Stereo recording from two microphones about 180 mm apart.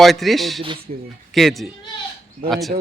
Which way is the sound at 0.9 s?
45° right (ahead or behind).